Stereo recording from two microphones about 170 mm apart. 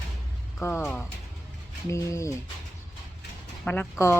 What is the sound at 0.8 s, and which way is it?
Speech, 10° left (ahead or behind).